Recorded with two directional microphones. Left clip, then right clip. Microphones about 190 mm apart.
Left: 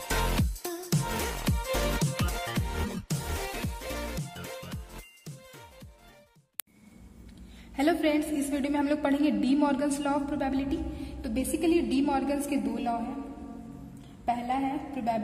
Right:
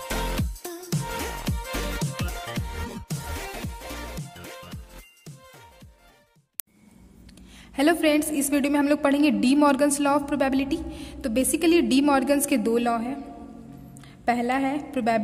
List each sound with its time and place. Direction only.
0.1 s music: centre (ahead or behind)
7.7 s a woman's voice: 30° right (ahead or behind); by 13.0 s 55° right (ahead or behind)
14.2 s a woman's voice: 45° right (ahead or behind)